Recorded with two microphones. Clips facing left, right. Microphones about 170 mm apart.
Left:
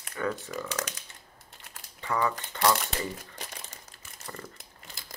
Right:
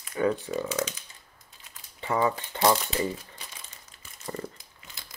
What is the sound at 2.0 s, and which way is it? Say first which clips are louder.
Speech: right 3 dB; 20° right (ahead or behind).